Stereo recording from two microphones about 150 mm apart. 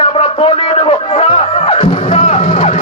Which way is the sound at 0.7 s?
40° left (ahead or behind).